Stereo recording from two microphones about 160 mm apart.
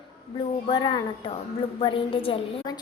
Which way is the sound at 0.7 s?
35° left (ahead or behind).